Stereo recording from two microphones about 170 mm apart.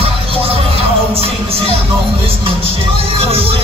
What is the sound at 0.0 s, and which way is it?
Music, 35° right (ahead or behind).